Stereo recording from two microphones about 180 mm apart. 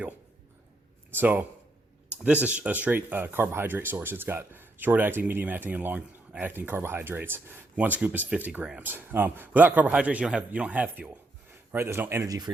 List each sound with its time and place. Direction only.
1.1 s speech: 10° right (ahead or behind)